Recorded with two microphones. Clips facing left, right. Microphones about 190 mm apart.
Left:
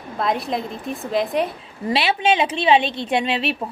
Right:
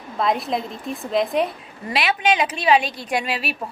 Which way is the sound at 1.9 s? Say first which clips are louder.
Left 2 dB; 30° left (ahead or behind).